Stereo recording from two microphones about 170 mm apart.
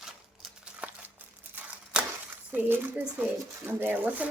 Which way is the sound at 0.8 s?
10° right (ahead or behind).